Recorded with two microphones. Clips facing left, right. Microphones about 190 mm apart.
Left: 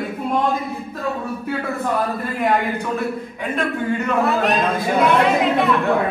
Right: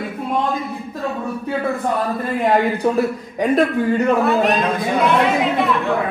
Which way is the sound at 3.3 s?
40° right (ahead or behind).